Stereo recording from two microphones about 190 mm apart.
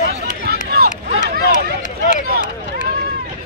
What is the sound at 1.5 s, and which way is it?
Run, 40° left (ahead or behind).